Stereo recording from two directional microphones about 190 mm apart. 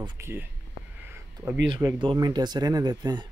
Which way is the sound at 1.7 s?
20° right (ahead or behind).